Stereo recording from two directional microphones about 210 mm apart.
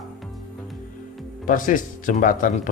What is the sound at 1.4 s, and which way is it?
Speech, 40° left (ahead or behind).